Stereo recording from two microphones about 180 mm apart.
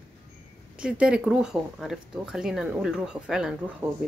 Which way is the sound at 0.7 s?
5° right (ahead or behind).